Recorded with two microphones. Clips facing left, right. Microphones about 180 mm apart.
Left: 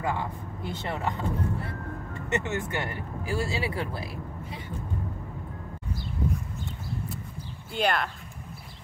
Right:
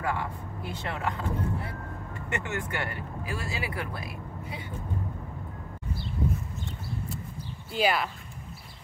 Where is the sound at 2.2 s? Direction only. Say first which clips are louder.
Left 4 dB; 20° left (ahead or behind).